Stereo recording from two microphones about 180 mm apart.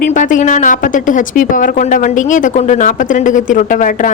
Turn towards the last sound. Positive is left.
turn(degrees=45)  # may be behind; listen again after turning